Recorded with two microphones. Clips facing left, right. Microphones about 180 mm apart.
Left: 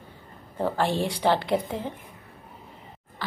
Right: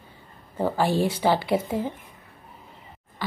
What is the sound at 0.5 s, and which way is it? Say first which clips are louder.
A woman's voice: right 2 dB; 5° right (ahead or behind).